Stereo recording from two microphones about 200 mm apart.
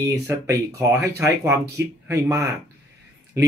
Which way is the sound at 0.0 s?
15° right (ahead or behind).